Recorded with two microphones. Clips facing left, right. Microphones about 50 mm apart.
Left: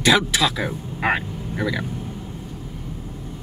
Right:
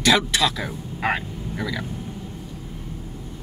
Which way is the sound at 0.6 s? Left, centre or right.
Centre.